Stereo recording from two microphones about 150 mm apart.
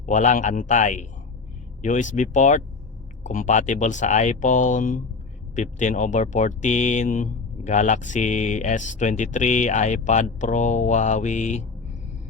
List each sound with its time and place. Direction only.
0.0 s speech: 55° left (ahead or behind)